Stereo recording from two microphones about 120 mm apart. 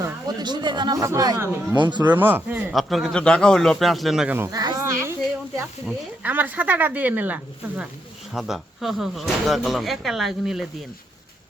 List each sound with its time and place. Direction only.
0.0 s speech: 40° right (ahead or behind)
2.1 s speech: 15° right (ahead or behind)
2.7 s speech: centre (ahead or behind)
4.4 s speech: 30° right (ahead or behind)
5.8 s speech: 5° right (ahead or behind)
6.3 s speech: 15° right (ahead or behind)
8.3 s speech: 5° right (ahead or behind)